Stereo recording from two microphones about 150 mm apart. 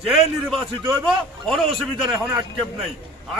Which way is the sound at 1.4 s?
5° left (ahead or behind).